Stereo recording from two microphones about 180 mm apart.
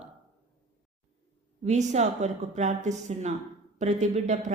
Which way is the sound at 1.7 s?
40° right (ahead or behind).